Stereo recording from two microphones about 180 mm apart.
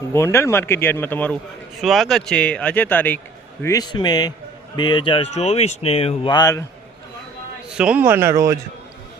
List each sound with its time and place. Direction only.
0.1 s a man's voice: 15° left (ahead or behind)
7.7 s a man's voice: 5° right (ahead or behind)